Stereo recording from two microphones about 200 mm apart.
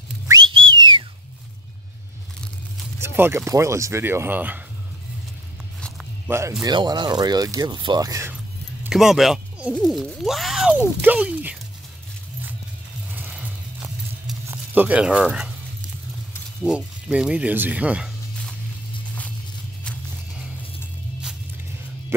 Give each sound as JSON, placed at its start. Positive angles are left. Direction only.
{"t": 0.3, "sound": "whistling", "side_deg": -25}
{"t": 3.0, "sound": "speech", "side_deg": -10}
{"t": 5.8, "sound": "walk", "side_deg": 5}
{"t": 6.2, "sound": "speech", "side_deg": -15}
{"t": 8.8, "sound": "speech", "side_deg": 0}
{"t": 13.1, "sound": "a sound", "side_deg": -10}
{"t": 16.6, "sound": "speech", "side_deg": -5}